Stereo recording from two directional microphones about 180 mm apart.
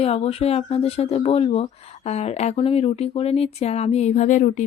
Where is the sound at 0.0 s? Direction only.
35° left (ahead or behind).